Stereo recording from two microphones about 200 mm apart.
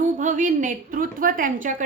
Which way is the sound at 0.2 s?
40° right (ahead or behind).